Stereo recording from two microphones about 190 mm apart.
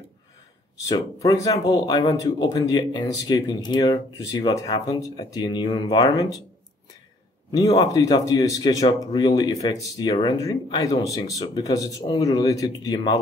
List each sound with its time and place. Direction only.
0.8 s speech: 20° left (ahead or behind)
7.6 s speech: 25° left (ahead or behind)